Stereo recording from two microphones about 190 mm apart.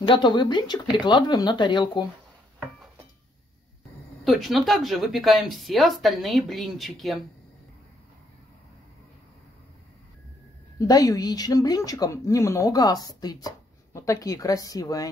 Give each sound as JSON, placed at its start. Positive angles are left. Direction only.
{"t": 0.0, "sound": "speech", "side_deg": 25}
{"t": 4.2, "sound": "speech", "side_deg": 0}
{"t": 10.8, "sound": "speech", "side_deg": 20}